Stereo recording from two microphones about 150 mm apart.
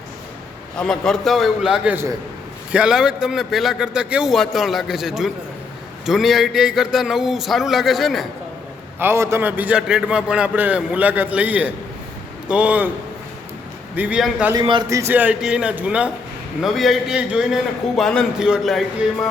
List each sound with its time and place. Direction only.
0.8 s a man's voice: 5° left (ahead or behind)
9.0 s a man's voice: 15° right (ahead or behind)
13.9 s a man's voice: 10° right (ahead or behind)
14.5 s a man's voice: 30° right (ahead or behind)
14.8 s a man's voice: 20° right (ahead or behind); by 18.8 s 5° right (ahead or behind)